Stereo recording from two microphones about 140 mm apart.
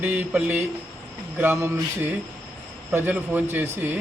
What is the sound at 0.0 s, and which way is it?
Speech, 10° right (ahead or behind).